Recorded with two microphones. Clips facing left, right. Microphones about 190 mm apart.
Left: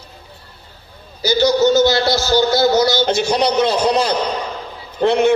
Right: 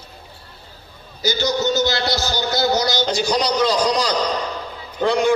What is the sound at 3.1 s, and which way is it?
A man's voice, 25° left (ahead or behind).